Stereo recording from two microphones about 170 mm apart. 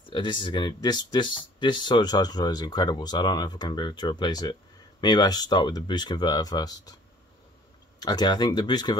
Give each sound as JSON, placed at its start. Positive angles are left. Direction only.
{"t": 0.1, "sound": "speech", "side_deg": 30}
{"t": 8.0, "sound": "speech", "side_deg": 25}